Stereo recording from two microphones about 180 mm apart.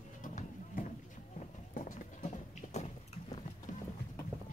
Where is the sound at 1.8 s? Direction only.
45° left (ahead or behind).